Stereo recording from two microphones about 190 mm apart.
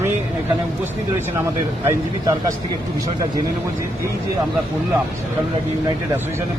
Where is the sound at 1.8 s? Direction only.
20° right (ahead or behind).